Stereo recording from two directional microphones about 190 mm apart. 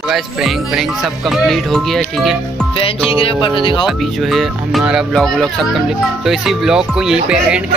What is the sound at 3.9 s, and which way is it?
Speech, centre (ahead or behind).